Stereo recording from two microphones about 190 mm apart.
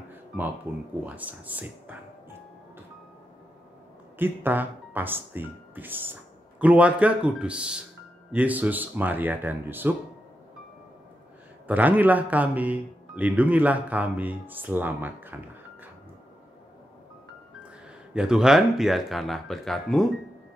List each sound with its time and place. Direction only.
0.7 s speech: 10° right (ahead or behind)
4.2 s speech: 10° right (ahead or behind)
11.6 s speech: 10° right (ahead or behind)
18.1 s speech: 5° right (ahead or behind)